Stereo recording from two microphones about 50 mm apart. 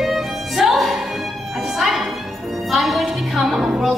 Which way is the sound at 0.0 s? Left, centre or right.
Centre.